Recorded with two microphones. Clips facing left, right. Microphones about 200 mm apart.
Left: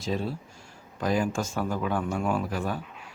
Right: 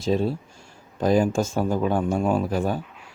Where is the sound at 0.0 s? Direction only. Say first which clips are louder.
Right 7 dB; 25° right (ahead or behind).